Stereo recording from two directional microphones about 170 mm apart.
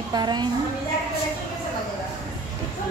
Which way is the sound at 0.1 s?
25° right (ahead or behind).